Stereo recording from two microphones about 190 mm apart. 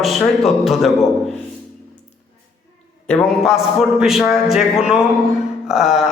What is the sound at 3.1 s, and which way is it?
A man's voice, centre (ahead or behind).